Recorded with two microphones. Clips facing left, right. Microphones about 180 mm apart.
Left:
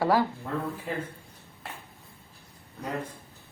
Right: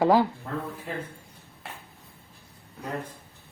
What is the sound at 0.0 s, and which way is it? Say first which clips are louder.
Speech: right 3 dB; 15° right (ahead or behind).